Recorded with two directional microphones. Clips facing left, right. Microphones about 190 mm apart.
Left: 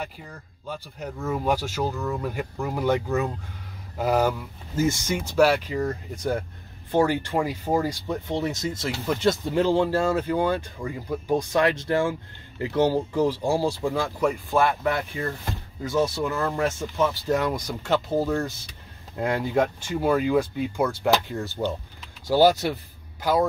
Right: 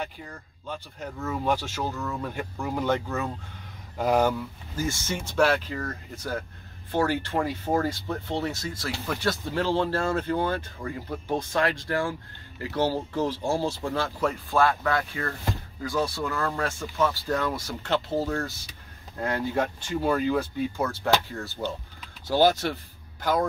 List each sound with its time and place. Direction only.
0.0 s speech: 10° left (ahead or behind)
4.7 s speech: 20° left (ahead or behind)
6.9 s speech: 15° left (ahead or behind)